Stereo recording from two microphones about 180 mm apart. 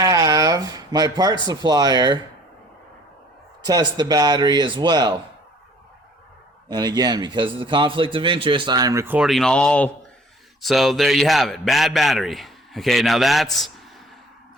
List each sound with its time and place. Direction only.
0.0 s a sound: 20° right (ahead or behind)
1.5 s a man's voice: 20° right (ahead or behind)
3.6 s a man's voice: 20° right (ahead or behind)
6.7 s a man's voice: 25° right (ahead or behind); by 13.7 s centre (ahead or behind)